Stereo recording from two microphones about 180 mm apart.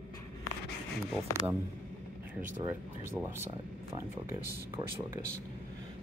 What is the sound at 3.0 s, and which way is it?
Speech, 15° right (ahead or behind).